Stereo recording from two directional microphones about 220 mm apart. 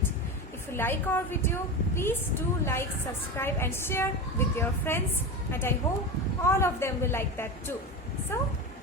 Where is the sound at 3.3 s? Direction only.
10° left (ahead or behind).